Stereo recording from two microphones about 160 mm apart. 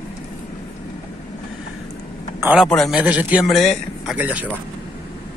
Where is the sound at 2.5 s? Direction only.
Centre (ahead or behind).